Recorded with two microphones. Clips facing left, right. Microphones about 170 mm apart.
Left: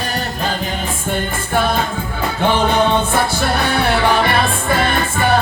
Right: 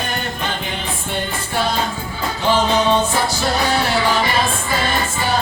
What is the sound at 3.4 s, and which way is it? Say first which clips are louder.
Music: left 1 dB; 60° left (ahead or behind).